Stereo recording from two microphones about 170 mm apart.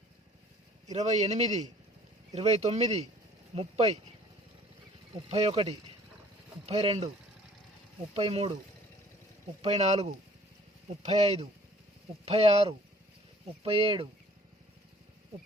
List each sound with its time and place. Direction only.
0.9 s speech: 40° right (ahead or behind)
5.1 s speech: 35° right (ahead or behind)
8.1 s speech: 35° right (ahead or behind)
9.6 s speech: 40° right (ahead or behind)